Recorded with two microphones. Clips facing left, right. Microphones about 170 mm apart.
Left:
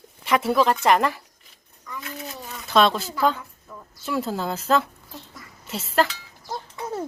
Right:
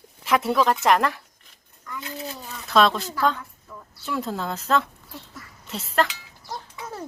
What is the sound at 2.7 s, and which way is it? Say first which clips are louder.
A woman's voice: even; centre (ahead or behind).